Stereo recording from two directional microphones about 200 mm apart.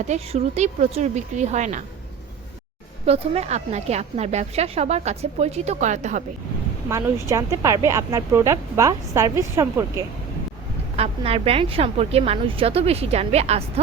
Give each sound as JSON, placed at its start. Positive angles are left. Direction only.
{"t": 0.1, "sound": "a woman's voice", "side_deg": -30}
{"t": 3.1, "sound": "a woman's voice", "side_deg": -30}
{"t": 6.9, "sound": "speech", "side_deg": -15}
{"t": 10.9, "sound": "a woman's voice", "side_deg": -30}